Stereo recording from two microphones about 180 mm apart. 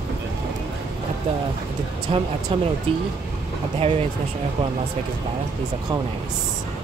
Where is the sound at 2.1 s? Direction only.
30° right (ahead or behind).